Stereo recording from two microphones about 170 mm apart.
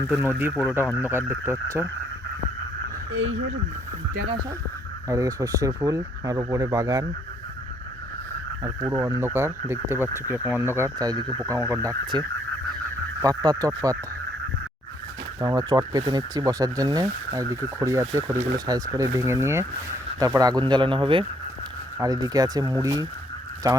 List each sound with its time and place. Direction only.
0.1 s speech: 15° right (ahead or behind)
5.0 s speech: 20° right (ahead or behind)
8.6 s speech: 15° right (ahead or behind)
13.2 s speech: 20° right (ahead or behind)
15.4 s speech: 20° right (ahead or behind)